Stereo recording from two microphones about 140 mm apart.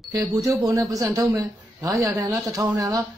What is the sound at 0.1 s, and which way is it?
Speech, 25° right (ahead or behind).